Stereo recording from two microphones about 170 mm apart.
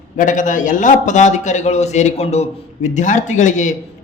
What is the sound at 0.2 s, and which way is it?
A man's voice, 50° left (ahead or behind).